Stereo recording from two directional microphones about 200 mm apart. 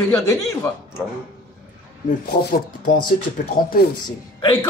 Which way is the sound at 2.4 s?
50° left (ahead or behind).